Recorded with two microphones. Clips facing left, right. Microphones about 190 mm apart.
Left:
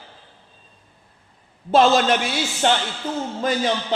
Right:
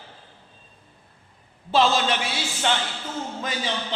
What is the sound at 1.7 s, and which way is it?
A man's voice, 50° left (ahead or behind).